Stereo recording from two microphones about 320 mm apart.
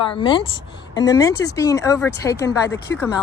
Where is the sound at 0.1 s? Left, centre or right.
Centre.